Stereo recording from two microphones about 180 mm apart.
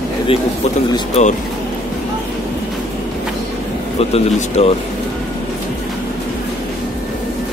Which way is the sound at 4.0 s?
35° left (ahead or behind).